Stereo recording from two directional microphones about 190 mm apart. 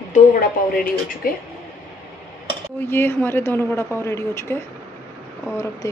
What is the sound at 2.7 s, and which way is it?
A woman's voice, 10° left (ahead or behind).